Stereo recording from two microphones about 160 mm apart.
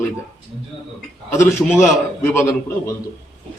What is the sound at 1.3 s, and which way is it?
A man's voice, 15° left (ahead or behind).